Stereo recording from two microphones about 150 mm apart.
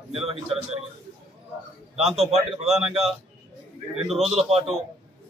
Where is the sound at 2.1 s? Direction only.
45° right (ahead or behind).